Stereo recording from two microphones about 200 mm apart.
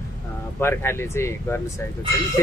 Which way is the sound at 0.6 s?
10° left (ahead or behind).